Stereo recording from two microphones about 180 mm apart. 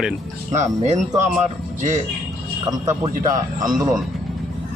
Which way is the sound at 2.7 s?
20° right (ahead or behind).